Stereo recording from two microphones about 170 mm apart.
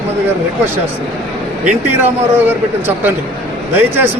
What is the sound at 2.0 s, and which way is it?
A man's voice, 10° right (ahead or behind).